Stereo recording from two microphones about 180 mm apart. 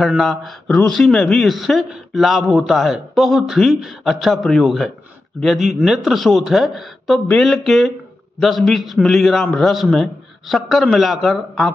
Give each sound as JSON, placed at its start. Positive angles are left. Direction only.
{"t": 0.0, "sound": "speech", "side_deg": 0}